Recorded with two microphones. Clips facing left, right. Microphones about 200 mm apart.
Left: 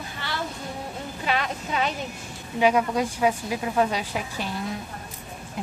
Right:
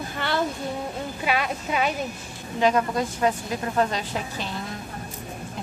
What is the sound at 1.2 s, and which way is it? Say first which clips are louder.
Speech: right 1 dB; 10° right (ahead or behind).